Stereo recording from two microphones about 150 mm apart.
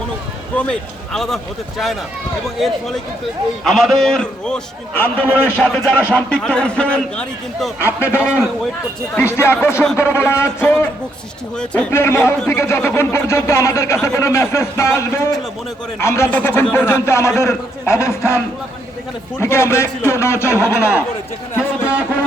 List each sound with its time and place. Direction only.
0.5 s a man's voice: 5° left (ahead or behind)
2.6 s a man's voice: centre (ahead or behind); by 10.8 s 15° left (ahead or behind)
11.5 s a man's voice: 5° left (ahead or behind)
19.4 s a man's voice: 20° left (ahead or behind)